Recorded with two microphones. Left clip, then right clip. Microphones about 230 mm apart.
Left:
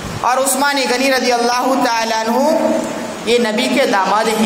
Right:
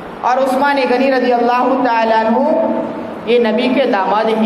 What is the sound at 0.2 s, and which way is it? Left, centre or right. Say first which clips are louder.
A man's voice: right 2 dB; left.